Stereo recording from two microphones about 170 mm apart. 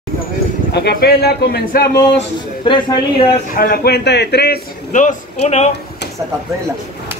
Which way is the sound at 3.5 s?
60° left (ahead or behind).